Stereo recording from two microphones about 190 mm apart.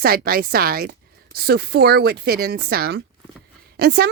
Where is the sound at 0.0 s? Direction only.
50° right (ahead or behind).